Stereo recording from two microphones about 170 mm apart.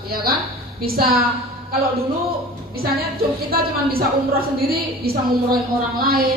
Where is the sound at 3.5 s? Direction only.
60° right (ahead or behind).